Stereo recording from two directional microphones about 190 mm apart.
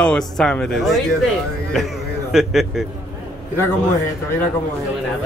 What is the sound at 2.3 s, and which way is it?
Speech, centre (ahead or behind).